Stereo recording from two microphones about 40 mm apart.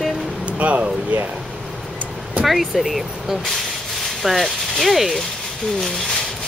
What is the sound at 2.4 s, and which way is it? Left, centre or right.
Speech, centre.